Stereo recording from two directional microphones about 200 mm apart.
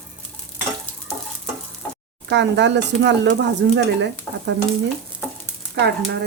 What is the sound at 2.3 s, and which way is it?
Speech, 60° right (ahead or behind).